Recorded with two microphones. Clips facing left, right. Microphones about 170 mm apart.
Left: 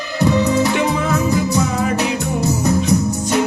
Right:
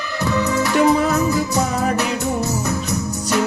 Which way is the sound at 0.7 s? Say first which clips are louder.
Right 3 dB; 40° right (ahead or behind).